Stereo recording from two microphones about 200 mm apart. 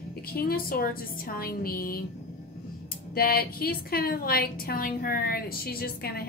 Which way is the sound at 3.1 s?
50° left (ahead or behind).